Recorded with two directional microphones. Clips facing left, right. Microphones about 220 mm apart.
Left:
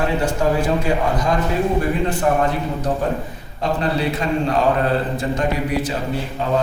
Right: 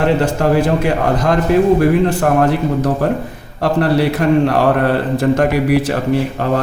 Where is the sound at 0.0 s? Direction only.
70° right (ahead or behind).